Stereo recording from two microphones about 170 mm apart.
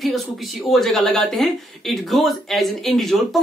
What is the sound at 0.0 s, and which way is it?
Speech, centre (ahead or behind).